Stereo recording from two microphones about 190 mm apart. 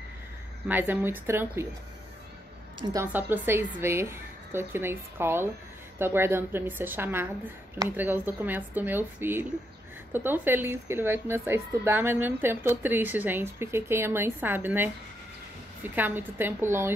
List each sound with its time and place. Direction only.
0.7 s speech: 10° right (ahead or behind)
2.8 s speech: 20° right (ahead or behind)